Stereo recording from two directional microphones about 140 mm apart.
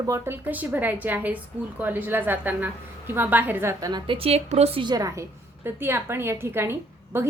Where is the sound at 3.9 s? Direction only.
40° right (ahead or behind).